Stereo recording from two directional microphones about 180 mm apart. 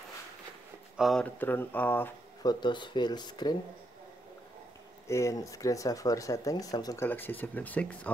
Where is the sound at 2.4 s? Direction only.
25° left (ahead or behind).